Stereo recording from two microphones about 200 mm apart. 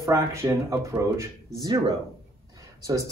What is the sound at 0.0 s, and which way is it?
Speech, 15° right (ahead or behind).